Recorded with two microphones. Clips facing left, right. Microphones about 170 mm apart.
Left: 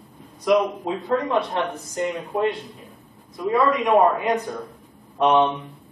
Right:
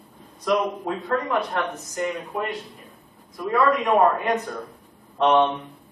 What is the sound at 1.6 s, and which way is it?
Speech, centre (ahead or behind).